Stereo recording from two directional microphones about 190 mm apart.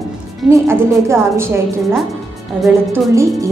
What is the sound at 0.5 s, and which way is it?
A woman's voice, 15° right (ahead or behind).